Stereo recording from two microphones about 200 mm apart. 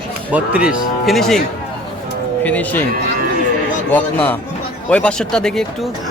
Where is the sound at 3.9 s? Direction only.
10° left (ahead or behind).